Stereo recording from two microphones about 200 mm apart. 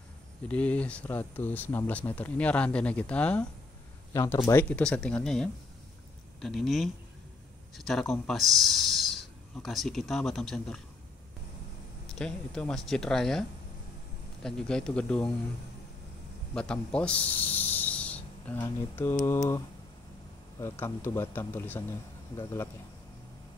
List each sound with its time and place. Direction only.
0.5 s speech: 5° left (ahead or behind)
12.1 s speech: 5° left (ahead or behind)
16.5 s speech: 5° left (ahead or behind)